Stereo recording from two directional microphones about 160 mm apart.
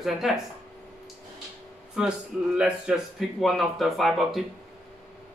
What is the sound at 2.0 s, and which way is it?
Speech, 5° right (ahead or behind).